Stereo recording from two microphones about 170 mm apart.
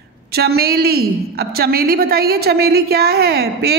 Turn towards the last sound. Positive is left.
turn(degrees=-70)  # may be behind; listen again after turning